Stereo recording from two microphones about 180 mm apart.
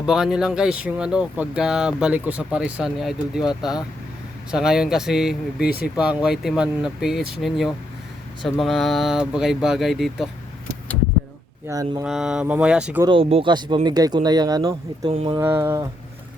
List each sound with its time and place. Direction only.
0.0 s speech: 5° right (ahead or behind)
4.5 s speech: 5° right (ahead or behind)
5.5 s speech: 60° left (ahead or behind)
6.2 s speech: centre (ahead or behind)
11.7 s speech: 20° right (ahead or behind)
12.0 s speech: centre (ahead or behind)
13.0 s speech: 30° right (ahead or behind)
15.1 s speech: 30° right (ahead or behind)
15.4 s speech: 10° right (ahead or behind)